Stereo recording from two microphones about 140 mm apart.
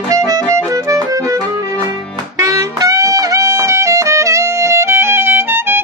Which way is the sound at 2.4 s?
25° right (ahead or behind).